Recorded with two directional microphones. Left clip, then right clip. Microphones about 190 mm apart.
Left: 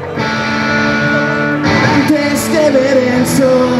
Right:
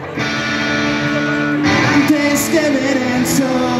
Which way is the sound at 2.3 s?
40° right (ahead or behind).